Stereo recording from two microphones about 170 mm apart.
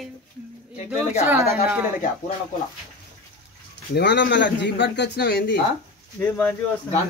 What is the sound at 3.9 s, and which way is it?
Speech, 90° left.